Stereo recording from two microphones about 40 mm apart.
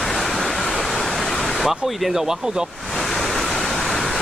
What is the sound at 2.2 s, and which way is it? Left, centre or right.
Speech, centre.